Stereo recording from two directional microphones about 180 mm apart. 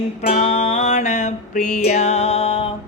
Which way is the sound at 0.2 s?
35° left (ahead or behind).